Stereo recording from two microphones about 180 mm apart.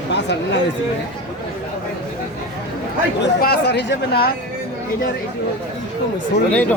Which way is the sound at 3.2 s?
60° left (ahead or behind).